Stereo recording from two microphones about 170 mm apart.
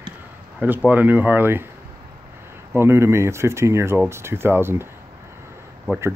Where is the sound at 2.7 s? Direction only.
15° right (ahead or behind).